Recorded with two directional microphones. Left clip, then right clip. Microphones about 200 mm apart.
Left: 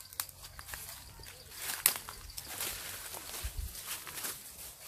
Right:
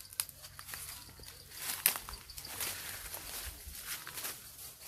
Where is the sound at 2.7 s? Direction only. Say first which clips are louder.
Left 1 dB; centre (ahead or behind).